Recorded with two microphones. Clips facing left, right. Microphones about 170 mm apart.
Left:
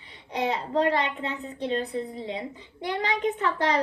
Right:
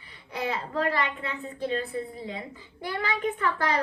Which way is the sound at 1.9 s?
20° left (ahead or behind).